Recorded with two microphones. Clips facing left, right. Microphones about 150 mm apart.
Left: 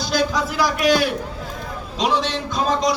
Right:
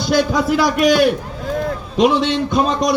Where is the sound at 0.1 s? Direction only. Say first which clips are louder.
Right 6 dB; 60° right (ahead or behind).